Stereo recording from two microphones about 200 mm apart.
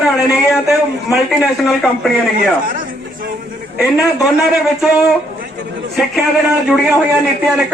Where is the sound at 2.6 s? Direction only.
45° right (ahead or behind).